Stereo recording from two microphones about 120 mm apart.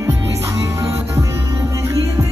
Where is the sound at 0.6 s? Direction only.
25° right (ahead or behind).